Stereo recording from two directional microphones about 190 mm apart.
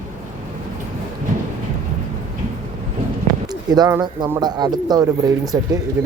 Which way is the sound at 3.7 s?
20° right (ahead or behind).